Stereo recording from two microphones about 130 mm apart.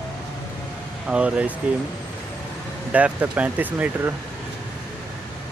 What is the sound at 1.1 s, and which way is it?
Speech, 10° right (ahead or behind).